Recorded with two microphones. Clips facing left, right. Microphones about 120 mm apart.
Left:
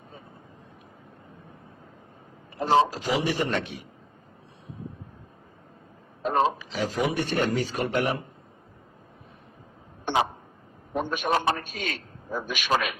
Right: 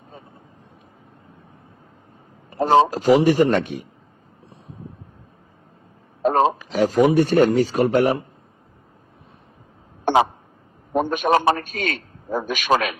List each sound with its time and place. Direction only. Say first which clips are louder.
2.5 s a man's voice: right 6 dB; 45° right (ahead or behind)
6.2 s speech: right 6 dB; 45° right (ahead or behind)
10.9 s a man's voice: right 7 dB; 50° right (ahead or behind)